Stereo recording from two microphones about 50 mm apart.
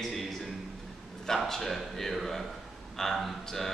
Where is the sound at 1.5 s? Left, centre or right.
Centre.